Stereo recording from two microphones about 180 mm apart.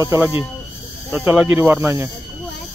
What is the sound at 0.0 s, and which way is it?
Speech, 15° right (ahead or behind).